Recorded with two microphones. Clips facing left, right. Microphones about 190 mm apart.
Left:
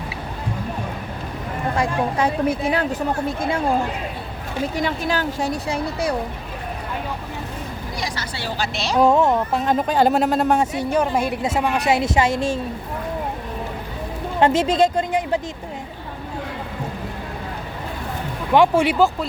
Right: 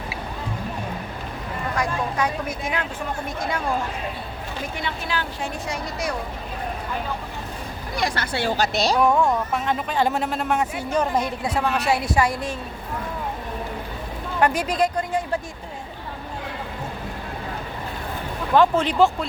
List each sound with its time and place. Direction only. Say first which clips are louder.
1.7 s speech: left 4 dB; 30° left (ahead or behind)
4.8 s a woman's voice: left 6 dB; 40° left (ahead or behind)
7.9 s speech: right 6 dB; 55° right (ahead or behind); by 9.0 s 40° right (ahead or behind)
9.0 s a woman's voice: left 6 dB; 25° left (ahead or behind)
10.9 s speech: left 2 dB; 10° left (ahead or behind)
11.4 s a woman's voice: left 3 dB; 25° left (ahead or behind)
14.3 s a woman's voice: left 4 dB; 25° left (ahead or behind)
18.5 s speech: left 2 dB; 10° left (ahead or behind)